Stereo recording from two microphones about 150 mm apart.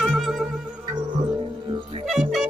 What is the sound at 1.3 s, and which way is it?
Music, 35° right (ahead or behind).